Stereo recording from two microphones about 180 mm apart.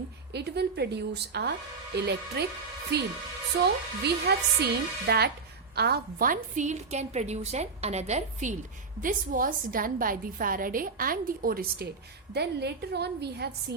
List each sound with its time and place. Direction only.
0.3 s a woman's voice: 65° right (ahead or behind)
12.3 s speech: 65° right (ahead or behind)